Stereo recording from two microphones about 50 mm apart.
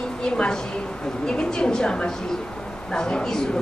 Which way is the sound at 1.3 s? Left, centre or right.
Centre.